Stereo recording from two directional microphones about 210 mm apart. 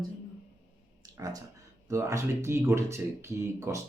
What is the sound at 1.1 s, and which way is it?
Speech, 15° right (ahead or behind).